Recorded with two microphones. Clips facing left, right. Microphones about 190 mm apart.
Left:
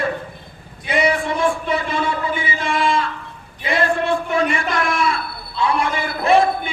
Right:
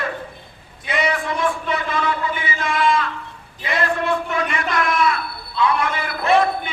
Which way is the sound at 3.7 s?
30° left (ahead or behind).